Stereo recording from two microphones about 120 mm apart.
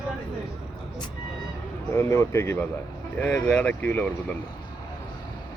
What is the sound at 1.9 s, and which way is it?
Speech, 25° left (ahead or behind).